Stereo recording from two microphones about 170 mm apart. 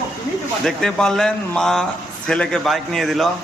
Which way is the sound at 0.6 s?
5° left (ahead or behind).